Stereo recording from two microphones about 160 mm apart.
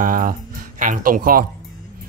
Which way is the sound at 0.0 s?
60° right (ahead or behind).